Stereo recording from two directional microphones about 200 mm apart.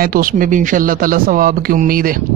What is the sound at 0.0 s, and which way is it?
Speech, 45° right (ahead or behind).